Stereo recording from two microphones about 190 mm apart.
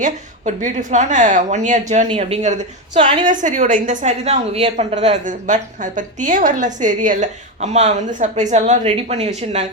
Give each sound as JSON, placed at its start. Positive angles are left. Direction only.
{"t": 0.0, "sound": "a woman's voice", "side_deg": -40}